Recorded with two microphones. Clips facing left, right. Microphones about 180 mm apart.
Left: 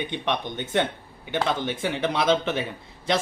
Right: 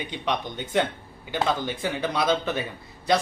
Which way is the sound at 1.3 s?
20° left (ahead or behind).